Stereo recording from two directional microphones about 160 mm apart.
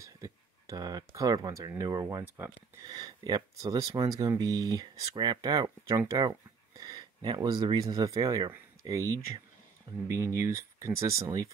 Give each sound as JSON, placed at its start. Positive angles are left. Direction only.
{"t": 0.0, "sound": "speech", "side_deg": -20}